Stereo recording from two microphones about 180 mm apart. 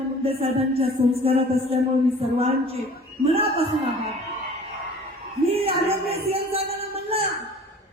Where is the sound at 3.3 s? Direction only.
35° right (ahead or behind).